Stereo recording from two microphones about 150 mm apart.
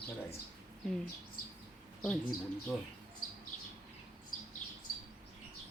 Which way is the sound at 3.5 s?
55° left (ahead or behind).